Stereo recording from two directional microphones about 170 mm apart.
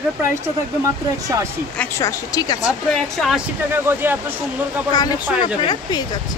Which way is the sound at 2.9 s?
5° left (ahead or behind).